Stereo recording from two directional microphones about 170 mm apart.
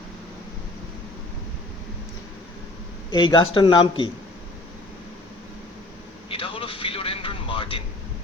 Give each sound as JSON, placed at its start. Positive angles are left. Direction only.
{"t": 3.1, "sound": "a man's voice", "side_deg": 25}
{"t": 6.3, "sound": "vehicle", "side_deg": 30}